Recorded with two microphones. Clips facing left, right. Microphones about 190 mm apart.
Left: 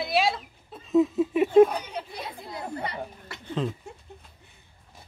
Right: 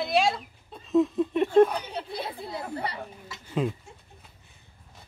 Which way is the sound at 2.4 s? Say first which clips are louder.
Right 1 dB; 30° right (ahead or behind).